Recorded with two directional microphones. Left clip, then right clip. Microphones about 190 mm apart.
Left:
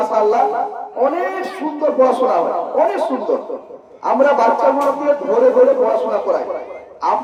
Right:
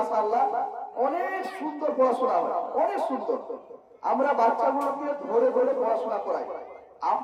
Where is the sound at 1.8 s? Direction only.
35° right (ahead or behind).